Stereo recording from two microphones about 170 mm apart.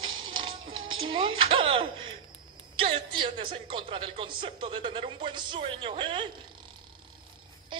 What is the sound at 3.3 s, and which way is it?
Speech, 30° right (ahead or behind).